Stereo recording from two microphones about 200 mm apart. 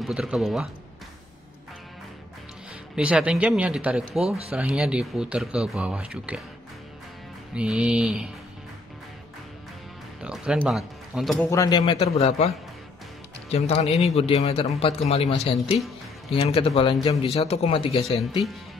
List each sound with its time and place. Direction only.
0.0 s speech: 5° right (ahead or behind)
3.0 s speech: 5° right (ahead or behind)
7.5 s speech: 5° right (ahead or behind)
10.2 s speech: 5° right (ahead or behind)
11.4 s a man's voice: 15° left (ahead or behind)